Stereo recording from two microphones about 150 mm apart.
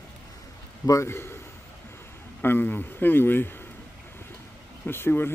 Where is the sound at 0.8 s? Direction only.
20° left (ahead or behind).